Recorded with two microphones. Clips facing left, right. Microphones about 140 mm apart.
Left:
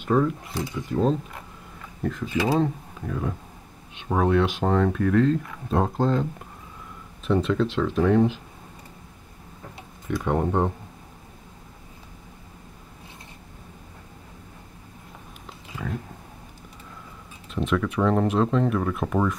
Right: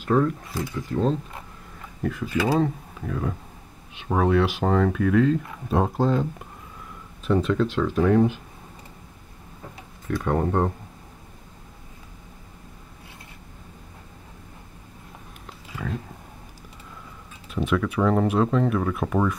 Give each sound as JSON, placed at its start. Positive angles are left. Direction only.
{"t": 0.0, "sound": "speech", "side_deg": 5}
{"t": 2.3, "sound": "speech", "side_deg": 20}
{"t": 2.6, "sound": "speech", "side_deg": 0}
{"t": 7.2, "sound": "speech", "side_deg": 0}
{"t": 10.2, "sound": "speech", "side_deg": 5}
{"t": 15.8, "sound": "a sound", "side_deg": 5}
{"t": 17.5, "sound": "speech", "side_deg": -5}